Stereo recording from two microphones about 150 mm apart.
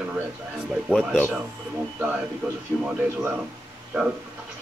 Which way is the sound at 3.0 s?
15° right (ahead or behind).